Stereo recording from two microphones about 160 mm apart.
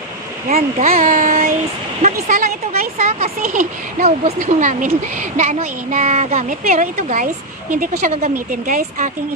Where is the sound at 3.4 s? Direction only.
60° right (ahead or behind).